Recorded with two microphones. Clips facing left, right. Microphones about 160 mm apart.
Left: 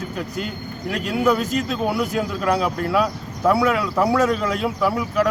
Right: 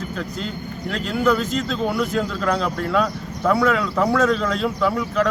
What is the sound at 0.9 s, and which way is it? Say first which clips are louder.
Speech: even; 15° left (ahead or behind).